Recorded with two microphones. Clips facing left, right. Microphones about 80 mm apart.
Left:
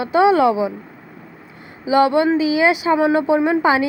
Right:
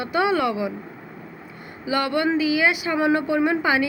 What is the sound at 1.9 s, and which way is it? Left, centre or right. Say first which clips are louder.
A woman's voice: left 7 dB; left.